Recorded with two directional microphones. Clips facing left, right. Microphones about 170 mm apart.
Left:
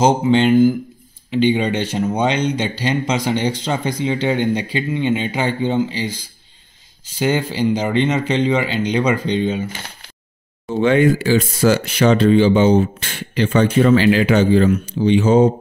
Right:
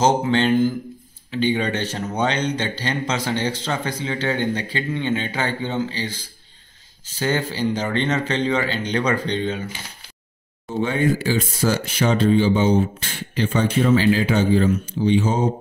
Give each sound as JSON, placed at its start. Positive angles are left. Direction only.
{"t": 0.2, "sound": "speech", "side_deg": 15}
{"t": 10.8, "sound": "speech", "side_deg": 85}